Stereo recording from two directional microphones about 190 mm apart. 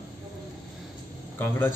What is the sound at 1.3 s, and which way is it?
Speech, 10° left (ahead or behind).